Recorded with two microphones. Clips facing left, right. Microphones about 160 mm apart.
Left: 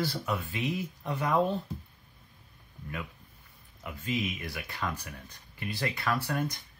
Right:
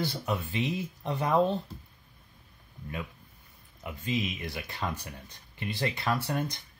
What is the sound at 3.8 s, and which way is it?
Speech, 25° right (ahead or behind).